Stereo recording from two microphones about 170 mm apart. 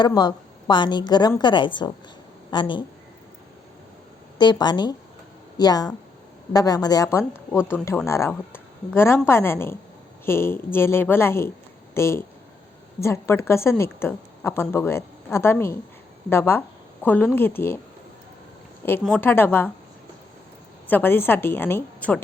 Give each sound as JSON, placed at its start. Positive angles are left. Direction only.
{"t": 0.0, "sound": "a woman's voice", "side_deg": 25}
{"t": 4.4, "sound": "a woman's voice", "side_deg": 25}
{"t": 19.1, "sound": "a woman's voice", "side_deg": 10}
{"t": 20.8, "sound": "a woman's voice", "side_deg": 10}